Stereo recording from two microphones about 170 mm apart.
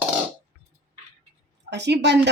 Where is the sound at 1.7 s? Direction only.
90° right.